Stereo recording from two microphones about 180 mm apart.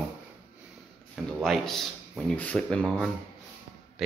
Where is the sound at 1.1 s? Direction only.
Centre (ahead or behind).